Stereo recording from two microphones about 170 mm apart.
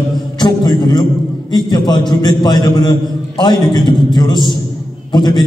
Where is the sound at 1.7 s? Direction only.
25° left (ahead or behind).